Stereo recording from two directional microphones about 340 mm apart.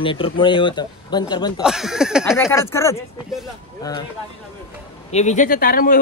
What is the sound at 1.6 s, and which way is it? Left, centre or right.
Speech, centre.